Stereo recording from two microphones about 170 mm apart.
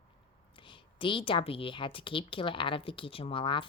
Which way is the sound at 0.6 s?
30° left (ahead or behind).